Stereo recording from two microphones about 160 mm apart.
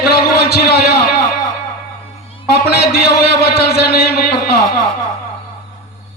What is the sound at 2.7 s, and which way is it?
A man's voice, 75° left (ahead or behind).